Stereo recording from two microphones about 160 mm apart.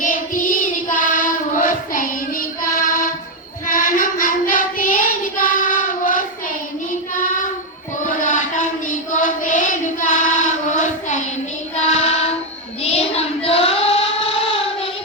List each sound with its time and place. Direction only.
0.0 s child singing: 55° left (ahead or behind)
8.0 s a sound: 55° left (ahead or behind)
11.8 s child singing: 40° left (ahead or behind)